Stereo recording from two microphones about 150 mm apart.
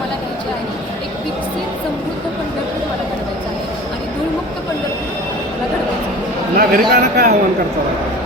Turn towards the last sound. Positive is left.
turn(degrees=-85)